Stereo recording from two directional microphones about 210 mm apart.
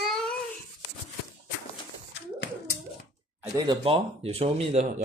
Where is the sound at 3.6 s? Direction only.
25° right (ahead or behind).